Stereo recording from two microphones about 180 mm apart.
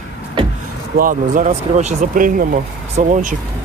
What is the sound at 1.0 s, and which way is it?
Speech, 50° right (ahead or behind).